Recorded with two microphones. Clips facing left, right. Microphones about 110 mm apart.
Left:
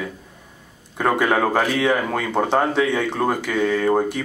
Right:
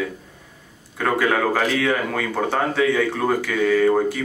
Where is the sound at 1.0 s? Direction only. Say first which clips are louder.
Left 1 dB; 20° left (ahead or behind).